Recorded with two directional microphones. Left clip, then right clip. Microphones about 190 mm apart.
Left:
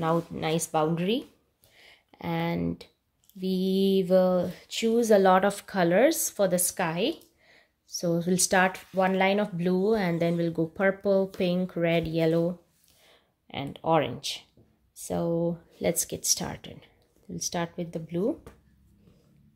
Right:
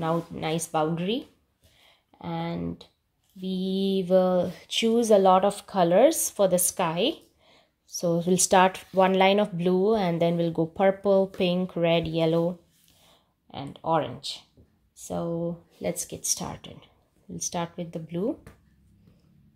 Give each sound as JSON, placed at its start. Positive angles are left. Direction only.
{"t": 0.0, "sound": "speech", "side_deg": 10}
{"t": 2.0, "sound": "a woman's voice", "side_deg": 25}
{"t": 5.0, "sound": "a woman's voice", "side_deg": 5}
{"t": 13.0, "sound": "speech", "side_deg": 15}